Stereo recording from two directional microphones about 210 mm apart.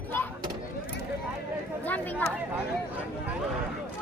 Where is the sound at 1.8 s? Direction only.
10° left (ahead or behind).